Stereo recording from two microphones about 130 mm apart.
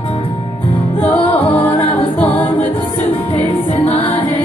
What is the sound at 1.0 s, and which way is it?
Music, 10° left (ahead or behind).